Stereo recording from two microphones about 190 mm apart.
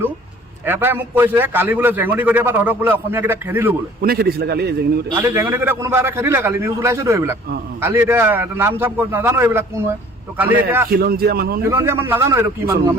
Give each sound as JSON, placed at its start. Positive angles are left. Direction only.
{"t": 0.6, "sound": "a man's voice", "side_deg": -10}
{"t": 4.0, "sound": "a man's voice", "side_deg": -55}
{"t": 5.1, "sound": "a man's voice", "side_deg": -10}
{"t": 10.8, "sound": "a man's voice", "side_deg": -55}
{"t": 11.6, "sound": "a man's voice", "side_deg": -15}